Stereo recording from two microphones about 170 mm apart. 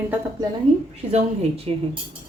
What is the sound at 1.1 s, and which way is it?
Speech, 35° right (ahead or behind).